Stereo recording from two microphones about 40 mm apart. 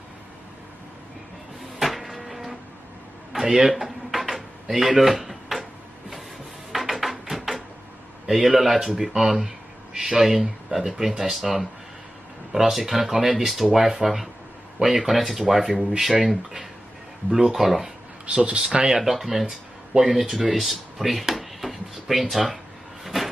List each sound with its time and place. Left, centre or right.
1.8 s a sound: centre
3.3 s dishes: centre
6.7 s a sound: centre
8.3 s speech: centre
10.2 s speech: centre
18.3 s speech: right
18.9 s speech: centre
19.9 s speech: centre
20.2 s speech: centre
20.5 s drawer open or close: centre
23.0 s cupboard open or close: centre